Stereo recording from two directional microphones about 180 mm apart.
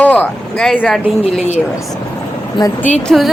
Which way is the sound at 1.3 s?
40° left (ahead or behind).